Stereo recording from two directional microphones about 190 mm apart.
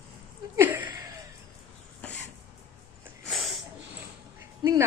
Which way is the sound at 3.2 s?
Centre (ahead or behind).